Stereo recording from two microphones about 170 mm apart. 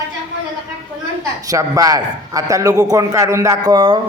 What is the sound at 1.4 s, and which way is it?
A man's voice, 20° right (ahead or behind).